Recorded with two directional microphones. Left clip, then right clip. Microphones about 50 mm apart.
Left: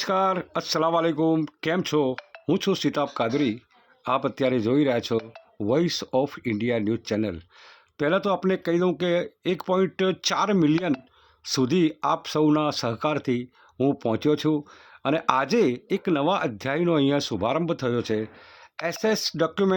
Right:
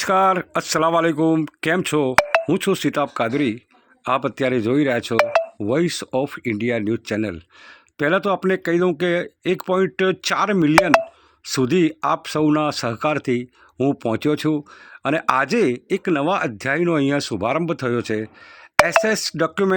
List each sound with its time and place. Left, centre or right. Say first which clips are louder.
0.0 s speech: right 6 dB; right
2.5 s speech: right 4 dB; right
3.2 s speech: right 3 dB; right
7.9 s speech: right 4 dB; right